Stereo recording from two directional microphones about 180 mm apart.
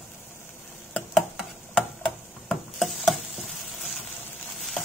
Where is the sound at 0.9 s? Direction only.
5° left (ahead or behind).